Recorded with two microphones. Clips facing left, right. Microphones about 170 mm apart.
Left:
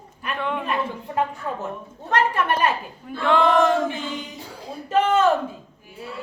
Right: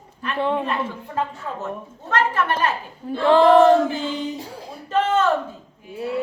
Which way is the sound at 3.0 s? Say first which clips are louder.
Right 5 dB; 30° right (ahead or behind).